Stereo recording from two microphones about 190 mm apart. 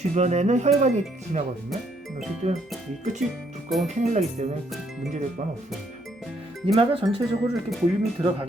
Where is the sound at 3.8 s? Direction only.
35° right (ahead or behind).